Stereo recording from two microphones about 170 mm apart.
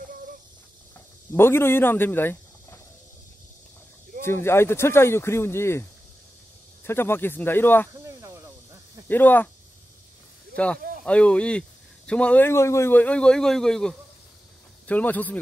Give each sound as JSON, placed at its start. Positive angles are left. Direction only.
{"t": 1.3, "sound": "speech", "side_deg": 15}
{"t": 4.2, "sound": "a man's voice", "side_deg": 15}
{"t": 7.9, "sound": "a sound", "side_deg": -20}
{"t": 9.1, "sound": "a man's voice", "side_deg": 10}
{"t": 10.5, "sound": "a man's voice", "side_deg": 5}